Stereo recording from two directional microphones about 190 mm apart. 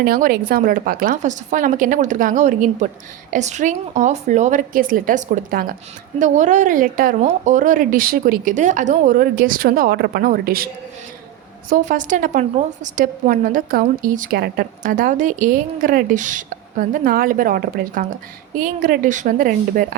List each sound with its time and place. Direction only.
0.0 s a woman's voice: 50° right (ahead or behind)
11.7 s a woman's voice: 40° right (ahead or behind)